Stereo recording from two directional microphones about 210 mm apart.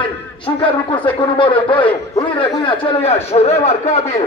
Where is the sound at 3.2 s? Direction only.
30° left (ahead or behind).